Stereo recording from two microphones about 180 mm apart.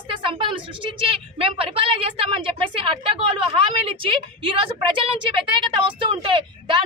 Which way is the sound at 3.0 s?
30° right (ahead or behind).